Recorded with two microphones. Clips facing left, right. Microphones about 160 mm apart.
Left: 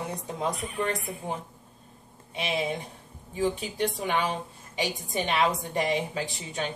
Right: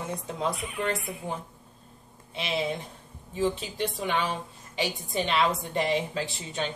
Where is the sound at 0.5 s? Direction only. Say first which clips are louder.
Even; 40° left (ahead or behind).